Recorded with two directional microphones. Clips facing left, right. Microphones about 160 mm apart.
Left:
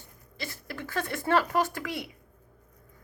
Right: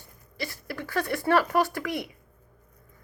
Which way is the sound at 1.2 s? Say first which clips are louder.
Right 2 dB; 20° left (ahead or behind).